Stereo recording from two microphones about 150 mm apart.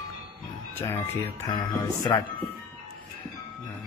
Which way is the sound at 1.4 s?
25° left (ahead or behind).